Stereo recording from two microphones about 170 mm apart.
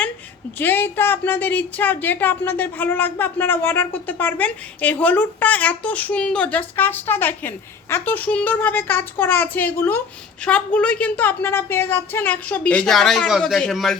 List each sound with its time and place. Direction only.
0.6 s a woman's voice: 10° left (ahead or behind)